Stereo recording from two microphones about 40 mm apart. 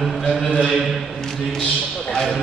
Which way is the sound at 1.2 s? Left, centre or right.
Centre.